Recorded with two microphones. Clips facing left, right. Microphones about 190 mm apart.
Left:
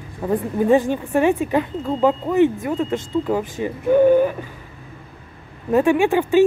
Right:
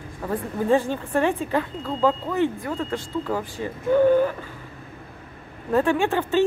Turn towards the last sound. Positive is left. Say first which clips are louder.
# left 5 dB
turn(degrees=15)  # may be behind; listen again after turning